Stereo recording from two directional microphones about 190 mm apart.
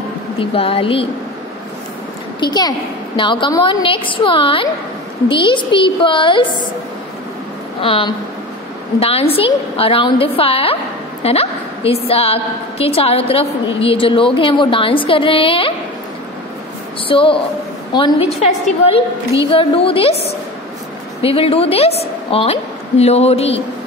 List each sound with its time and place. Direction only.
0.4 s a woman's voice: 30° left (ahead or behind)
2.4 s a woman's voice: 20° left (ahead or behind)
7.8 s a woman's voice: 30° left (ahead or behind)
17.1 s a woman's voice: 30° left (ahead or behind)